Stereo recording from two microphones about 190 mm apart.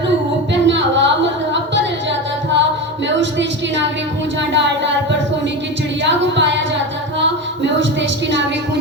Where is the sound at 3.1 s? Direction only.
70° right (ahead or behind).